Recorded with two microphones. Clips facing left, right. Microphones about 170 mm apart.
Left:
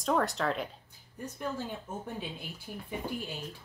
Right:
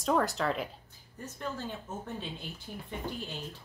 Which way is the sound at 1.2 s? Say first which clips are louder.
Left 2 dB; 10° left (ahead or behind).